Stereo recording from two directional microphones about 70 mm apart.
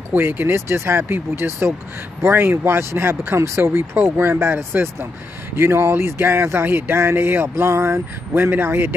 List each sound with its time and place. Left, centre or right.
0.1 s speech: right